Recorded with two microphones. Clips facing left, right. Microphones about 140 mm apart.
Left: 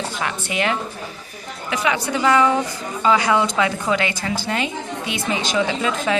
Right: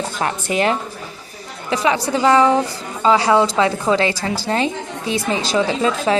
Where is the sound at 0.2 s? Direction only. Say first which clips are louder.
Right 6 dB; 40° right (ahead or behind).